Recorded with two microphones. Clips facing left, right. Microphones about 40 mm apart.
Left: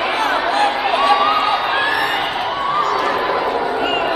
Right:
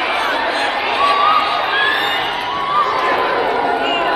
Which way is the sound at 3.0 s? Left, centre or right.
Centre.